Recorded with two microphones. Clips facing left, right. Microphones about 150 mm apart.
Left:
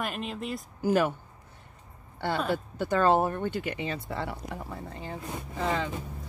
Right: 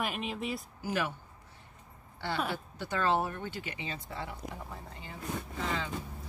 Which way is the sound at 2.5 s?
50° left (ahead or behind).